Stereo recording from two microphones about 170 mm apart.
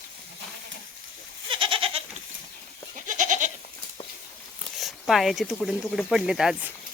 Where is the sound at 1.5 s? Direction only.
30° right (ahead or behind).